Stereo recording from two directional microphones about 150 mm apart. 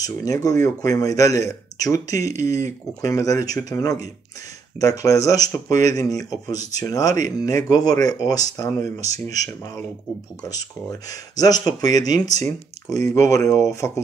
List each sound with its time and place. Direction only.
0.0 s speech: 25° left (ahead or behind)